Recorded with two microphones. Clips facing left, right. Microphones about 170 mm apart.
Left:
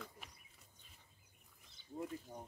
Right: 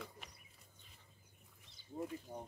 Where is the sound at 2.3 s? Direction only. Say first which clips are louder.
Right 3 dB; 25° right (ahead or behind).